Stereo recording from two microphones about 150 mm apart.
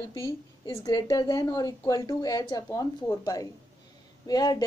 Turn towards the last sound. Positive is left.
turn(degrees=25)  # may be behind; listen again after turning